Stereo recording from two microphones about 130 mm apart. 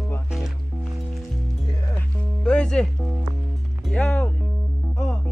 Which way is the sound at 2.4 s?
5° left (ahead or behind).